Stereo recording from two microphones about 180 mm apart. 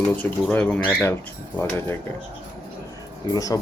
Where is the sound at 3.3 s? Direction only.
20° left (ahead or behind).